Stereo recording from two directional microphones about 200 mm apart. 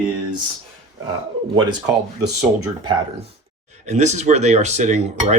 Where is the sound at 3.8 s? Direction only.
35° right (ahead or behind).